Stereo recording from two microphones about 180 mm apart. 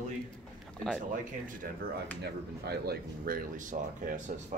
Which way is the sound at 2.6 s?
60° right (ahead or behind).